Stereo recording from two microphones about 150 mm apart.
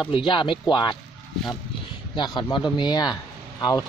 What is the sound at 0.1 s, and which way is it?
Speech, 35° left (ahead or behind).